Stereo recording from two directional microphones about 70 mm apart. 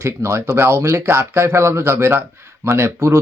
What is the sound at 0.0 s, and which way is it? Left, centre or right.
Speech, right.